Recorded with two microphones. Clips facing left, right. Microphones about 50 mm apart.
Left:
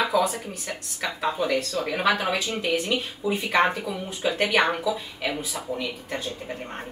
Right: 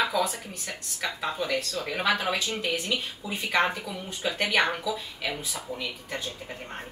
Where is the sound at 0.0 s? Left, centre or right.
Centre.